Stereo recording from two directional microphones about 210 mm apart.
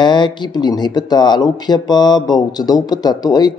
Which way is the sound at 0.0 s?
20° left (ahead or behind).